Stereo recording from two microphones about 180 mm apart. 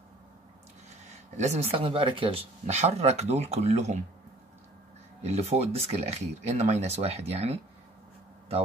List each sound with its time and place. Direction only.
1.3 s speech: 40° right (ahead or behind)
5.2 s speech: 35° right (ahead or behind)